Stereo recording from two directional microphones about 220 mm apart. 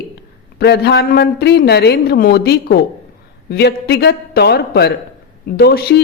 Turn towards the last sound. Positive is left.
turn(degrees=45)  # may be behind; listen again after turning